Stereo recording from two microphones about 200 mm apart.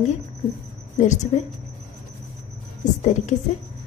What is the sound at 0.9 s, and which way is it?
Speech, 35° left (ahead or behind).